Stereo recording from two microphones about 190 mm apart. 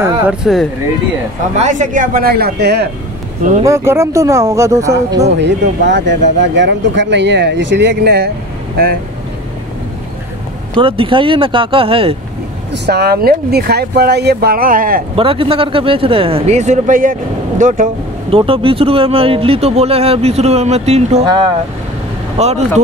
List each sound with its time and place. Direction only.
0.0 s speech: 5° right (ahead or behind)
1.6 s speech: 40° right (ahead or behind); by 2.9 s 60° right (ahead or behind)
3.6 s speech: 15° right (ahead or behind)
5.4 s speech: 65° right (ahead or behind)
10.8 s speech: 30° right (ahead or behind)
12.7 s speech: 60° right (ahead or behind)
15.1 s speech: 30° right (ahead or behind)
18.3 s speech: 30° right (ahead or behind)